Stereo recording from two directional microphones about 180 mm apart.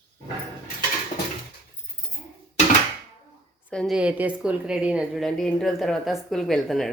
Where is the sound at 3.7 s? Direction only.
5° left (ahead or behind).